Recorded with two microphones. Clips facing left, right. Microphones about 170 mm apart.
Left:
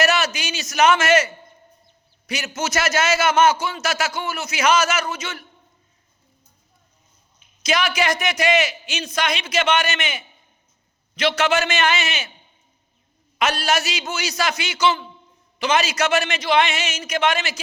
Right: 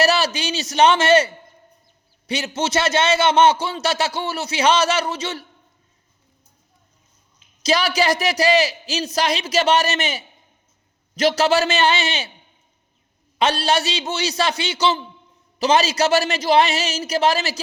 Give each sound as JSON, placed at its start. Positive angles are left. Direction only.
{"t": 0.0, "sound": "a man's voice", "side_deg": -35}
{"t": 7.6, "sound": "a man's voice", "side_deg": -35}
{"t": 13.4, "sound": "a man's voice", "side_deg": -30}